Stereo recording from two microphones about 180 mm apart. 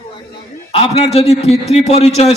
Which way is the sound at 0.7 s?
35° left (ahead or behind).